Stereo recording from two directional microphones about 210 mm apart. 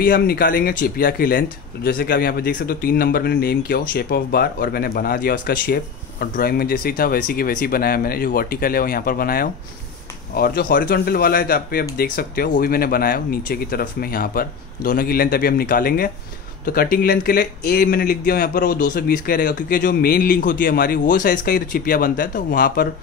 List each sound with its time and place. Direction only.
0.0 s speech: 45° left (ahead or behind)